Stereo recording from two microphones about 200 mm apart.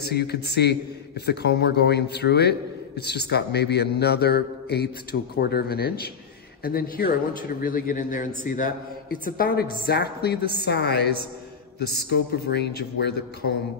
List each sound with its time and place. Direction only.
0.0 s a man's voice: 55° left (ahead or behind)